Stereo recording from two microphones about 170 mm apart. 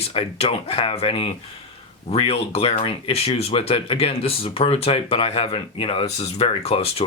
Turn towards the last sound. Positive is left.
turn(degrees=35)  # may be behind; listen again after turning